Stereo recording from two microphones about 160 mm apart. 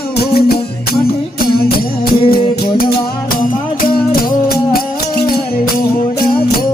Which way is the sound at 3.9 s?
65° left (ahead or behind).